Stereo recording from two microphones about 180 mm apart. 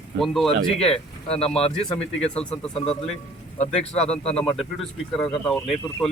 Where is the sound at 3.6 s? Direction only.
40° left (ahead or behind).